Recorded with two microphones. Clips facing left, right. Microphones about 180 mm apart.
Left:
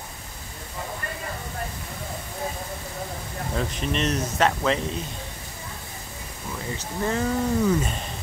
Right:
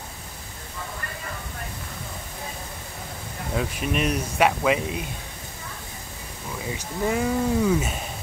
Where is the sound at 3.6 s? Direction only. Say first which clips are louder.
Right 1 dB; 10° right (ahead or behind).